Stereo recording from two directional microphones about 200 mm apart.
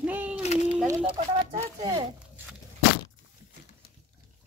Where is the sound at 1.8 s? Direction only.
25° right (ahead or behind).